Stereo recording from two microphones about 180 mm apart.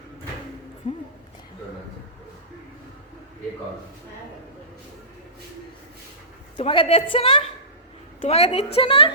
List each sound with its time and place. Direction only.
6.6 s a woman's voice: 30° left (ahead or behind)